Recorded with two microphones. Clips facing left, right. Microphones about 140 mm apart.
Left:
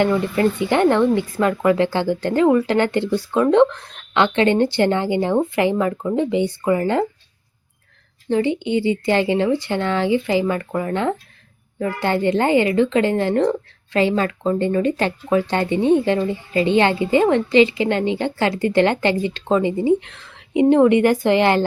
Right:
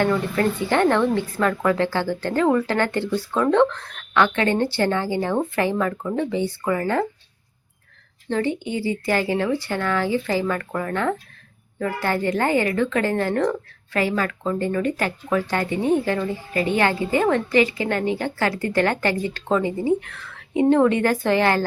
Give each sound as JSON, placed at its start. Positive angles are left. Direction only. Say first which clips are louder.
{"t": 0.0, "sound": "speech", "louder": "left 3 dB", "side_deg": 15}
{"t": 8.3, "sound": "a woman's voice", "louder": "left 5 dB", "side_deg": 15}